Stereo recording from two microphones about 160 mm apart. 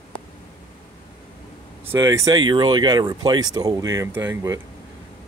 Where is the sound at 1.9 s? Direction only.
20° right (ahead or behind).